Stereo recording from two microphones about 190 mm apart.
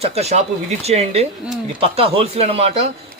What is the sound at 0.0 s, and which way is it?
A man's voice, 35° right (ahead or behind).